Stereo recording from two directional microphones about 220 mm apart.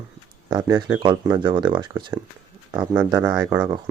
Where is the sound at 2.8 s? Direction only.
10° right (ahead or behind).